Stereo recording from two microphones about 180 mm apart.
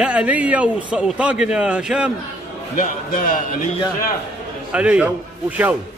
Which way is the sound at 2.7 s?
50° left (ahead or behind).